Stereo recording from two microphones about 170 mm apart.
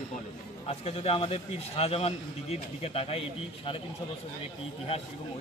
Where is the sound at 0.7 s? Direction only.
35° left (ahead or behind).